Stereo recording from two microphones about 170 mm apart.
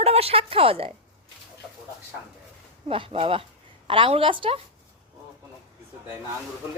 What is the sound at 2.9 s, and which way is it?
A woman's voice, 30° right (ahead or behind).